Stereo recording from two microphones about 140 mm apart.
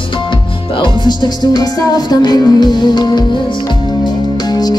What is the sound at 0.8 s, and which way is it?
Music, 35° left (ahead or behind).